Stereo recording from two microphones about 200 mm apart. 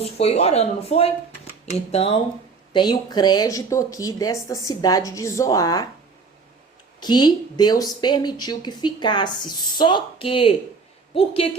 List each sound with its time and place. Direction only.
0.0 s speech: 30° left (ahead or behind)
7.0 s speech: 20° left (ahead or behind)